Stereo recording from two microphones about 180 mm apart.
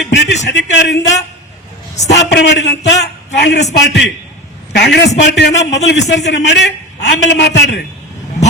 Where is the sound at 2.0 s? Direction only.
70° left (ahead or behind).